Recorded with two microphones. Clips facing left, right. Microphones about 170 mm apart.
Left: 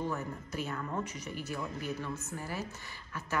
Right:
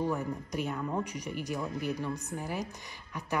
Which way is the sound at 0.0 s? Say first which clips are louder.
Right 4 dB; 15° right (ahead or behind).